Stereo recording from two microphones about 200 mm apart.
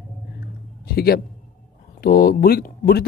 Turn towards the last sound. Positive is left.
turn(degrees=50)  # may be behind; listen again after turning